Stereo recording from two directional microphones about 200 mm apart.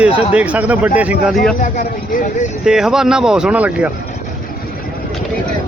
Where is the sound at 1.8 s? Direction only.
45° left (ahead or behind).